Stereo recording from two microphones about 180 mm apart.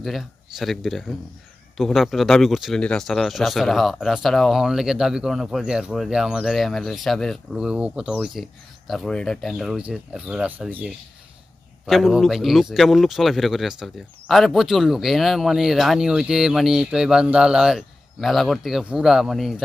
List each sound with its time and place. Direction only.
0.0 s speech: centre (ahead or behind)